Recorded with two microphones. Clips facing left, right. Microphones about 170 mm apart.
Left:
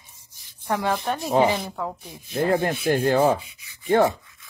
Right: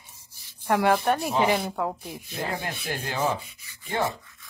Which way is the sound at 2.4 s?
55° left (ahead or behind).